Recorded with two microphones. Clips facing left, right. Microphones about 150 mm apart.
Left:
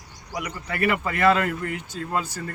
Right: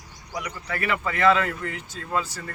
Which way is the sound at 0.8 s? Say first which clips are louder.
Left 1 dB; 45° left (ahead or behind).